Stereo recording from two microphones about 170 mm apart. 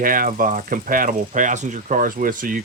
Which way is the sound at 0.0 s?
55° right (ahead or behind).